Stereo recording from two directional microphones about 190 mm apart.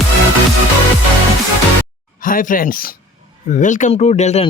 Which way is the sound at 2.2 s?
45° left (ahead or behind).